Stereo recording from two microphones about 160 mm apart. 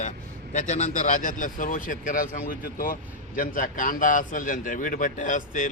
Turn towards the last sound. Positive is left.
turn(degrees=50)  # may be behind; listen again after turning